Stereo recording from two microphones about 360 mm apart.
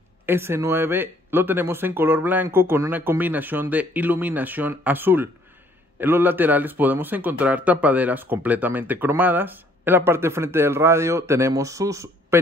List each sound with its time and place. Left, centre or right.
0.3 s speech: centre